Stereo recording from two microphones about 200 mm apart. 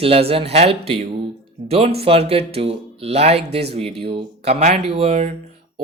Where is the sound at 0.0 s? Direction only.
30° right (ahead or behind).